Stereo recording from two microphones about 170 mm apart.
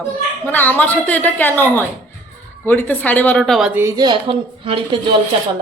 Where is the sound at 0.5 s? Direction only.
10° left (ahead or behind).